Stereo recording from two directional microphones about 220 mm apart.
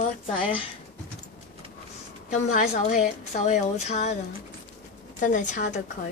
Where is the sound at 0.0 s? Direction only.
25° left (ahead or behind).